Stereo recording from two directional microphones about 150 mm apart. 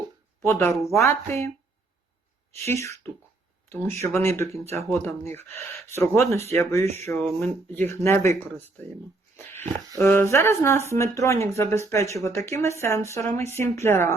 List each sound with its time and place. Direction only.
0.4 s speech: 20° left (ahead or behind)
2.6 s speech: 20° left (ahead or behind)
10.0 s speech: 20° left (ahead or behind)